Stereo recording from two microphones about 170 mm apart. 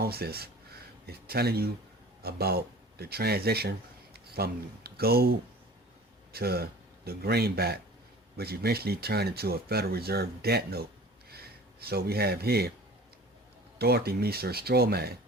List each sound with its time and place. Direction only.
0.0 s speech: 65° right (ahead or behind)
13.7 s speech: 65° right (ahead or behind)